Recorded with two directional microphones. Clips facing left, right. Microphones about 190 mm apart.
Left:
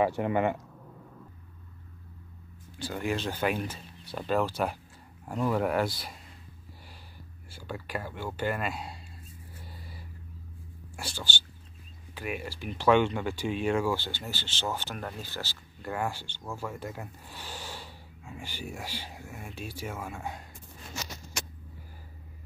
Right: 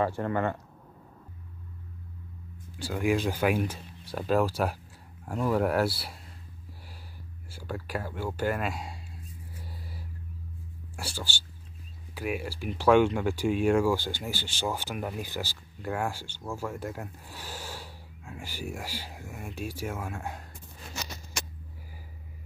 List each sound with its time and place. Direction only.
0.2 s speech: 15° left (ahead or behind)
2.8 s speech: 10° right (ahead or behind)
7.4 s speech: 10° right (ahead or behind)
11.0 s speech: 10° right (ahead or behind)